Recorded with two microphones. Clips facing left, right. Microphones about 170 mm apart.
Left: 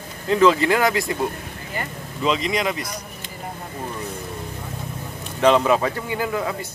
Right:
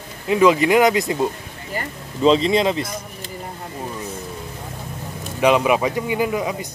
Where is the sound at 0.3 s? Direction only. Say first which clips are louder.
Right 2 dB; 15° right (ahead or behind).